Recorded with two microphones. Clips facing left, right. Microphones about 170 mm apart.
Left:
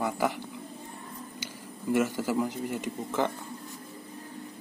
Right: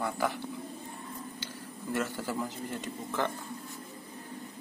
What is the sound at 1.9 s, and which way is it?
Speech, 15° left (ahead or behind).